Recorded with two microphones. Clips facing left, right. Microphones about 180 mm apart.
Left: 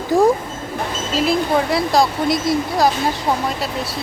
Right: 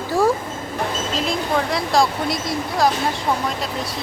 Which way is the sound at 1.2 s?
5° left (ahead or behind).